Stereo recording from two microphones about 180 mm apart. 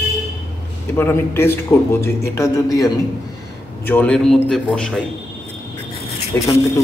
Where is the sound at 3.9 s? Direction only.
5° left (ahead or behind).